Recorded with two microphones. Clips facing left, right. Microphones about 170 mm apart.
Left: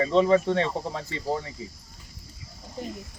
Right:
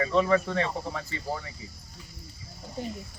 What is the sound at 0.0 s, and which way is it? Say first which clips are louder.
Speech: left 4 dB; 25° left (ahead or behind).